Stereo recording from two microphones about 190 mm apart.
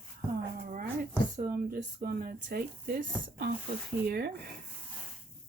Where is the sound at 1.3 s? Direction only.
50° right (ahead or behind).